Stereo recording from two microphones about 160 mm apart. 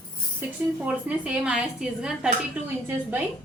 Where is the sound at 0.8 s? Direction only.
5° right (ahead or behind).